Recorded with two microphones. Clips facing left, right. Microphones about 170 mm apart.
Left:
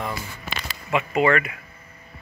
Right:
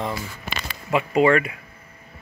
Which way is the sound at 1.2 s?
30° right (ahead or behind).